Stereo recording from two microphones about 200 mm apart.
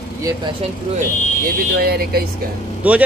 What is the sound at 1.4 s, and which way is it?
Speech, 50° right (ahead or behind).